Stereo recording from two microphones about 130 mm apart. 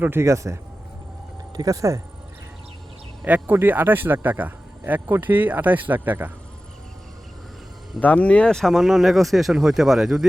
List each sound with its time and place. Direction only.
0.0 s speech: 20° right (ahead or behind)
3.2 s speech: 15° right (ahead or behind)
8.0 s speech: 10° left (ahead or behind)